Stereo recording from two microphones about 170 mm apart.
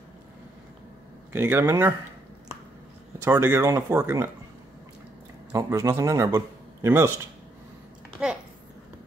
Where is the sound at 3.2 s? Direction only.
15° right (ahead or behind).